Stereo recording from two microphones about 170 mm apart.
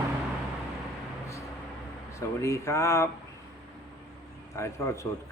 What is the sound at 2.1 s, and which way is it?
Speech, 15° left (ahead or behind).